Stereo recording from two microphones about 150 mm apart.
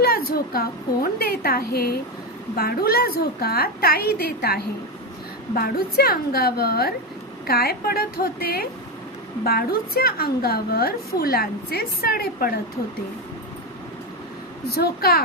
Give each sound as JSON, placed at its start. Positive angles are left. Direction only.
{"t": 0.0, "sound": "a woman's voice", "side_deg": 90}
{"t": 14.7, "sound": "a woman's voice", "side_deg": 90}